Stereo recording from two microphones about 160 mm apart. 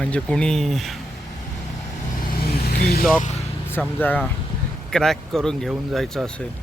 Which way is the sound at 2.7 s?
75° left (ahead or behind).